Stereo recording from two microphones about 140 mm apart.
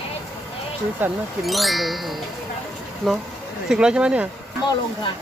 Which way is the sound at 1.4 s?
Centre (ahead or behind).